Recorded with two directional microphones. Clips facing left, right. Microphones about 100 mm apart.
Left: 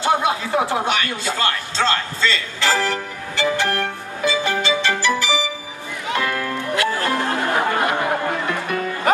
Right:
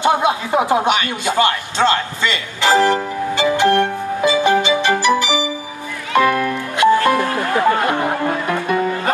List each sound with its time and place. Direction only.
0.0 s a sound: 20° right (ahead or behind)
6.1 s music: 20° right (ahead or behind)
7.2 s music: 20° left (ahead or behind)